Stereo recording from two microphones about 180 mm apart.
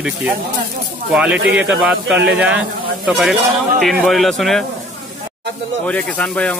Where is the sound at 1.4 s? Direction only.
85° right.